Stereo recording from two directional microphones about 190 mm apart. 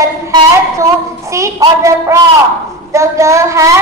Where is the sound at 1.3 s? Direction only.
15° right (ahead or behind).